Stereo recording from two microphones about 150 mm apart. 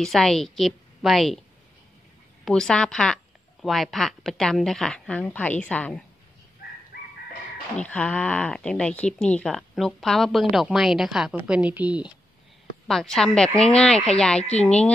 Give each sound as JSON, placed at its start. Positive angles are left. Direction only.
{"t": 0.0, "sound": "a woman's voice", "side_deg": 0}
{"t": 2.4, "sound": "a woman's voice", "side_deg": 5}
{"t": 6.9, "sound": "chicken", "side_deg": 90}
{"t": 7.7, "sound": "a woman's voice", "side_deg": 10}
{"t": 12.8, "sound": "a woman's voice", "side_deg": 5}
{"t": 14.4, "sound": "speech", "side_deg": 45}